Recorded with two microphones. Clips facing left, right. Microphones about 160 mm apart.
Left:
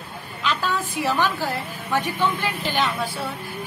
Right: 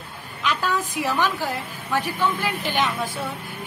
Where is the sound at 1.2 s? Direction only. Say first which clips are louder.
Left 1 dB; 15° right (ahead or behind).